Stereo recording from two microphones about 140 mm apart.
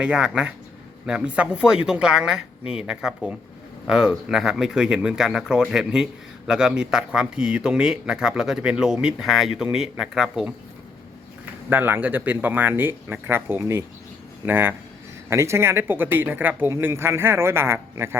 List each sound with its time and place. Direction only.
0.0 s a man's voice: 5° right (ahead or behind)
11.7 s speech: 15° right (ahead or behind)